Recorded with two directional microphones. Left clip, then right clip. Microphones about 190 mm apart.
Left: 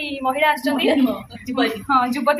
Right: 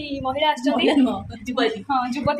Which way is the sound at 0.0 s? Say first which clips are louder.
Left 3 dB; 5° right (ahead or behind).